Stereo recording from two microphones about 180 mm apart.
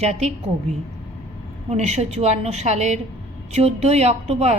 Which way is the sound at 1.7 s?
40° right (ahead or behind).